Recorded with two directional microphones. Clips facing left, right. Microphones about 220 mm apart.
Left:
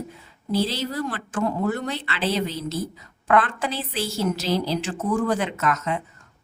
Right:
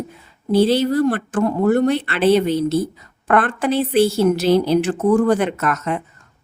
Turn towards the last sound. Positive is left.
turn(degrees=-55)  # may be behind; listen again after turning